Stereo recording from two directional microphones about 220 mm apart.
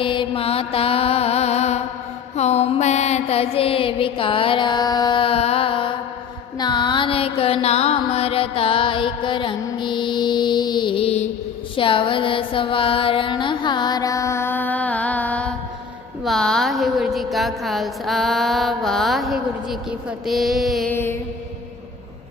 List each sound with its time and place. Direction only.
0.0 s mantra: 20° left (ahead or behind)
6.6 s music: 20° left (ahead or behind)
16.2 s a woman's voice: centre (ahead or behind)
20.1 s a sound: centre (ahead or behind)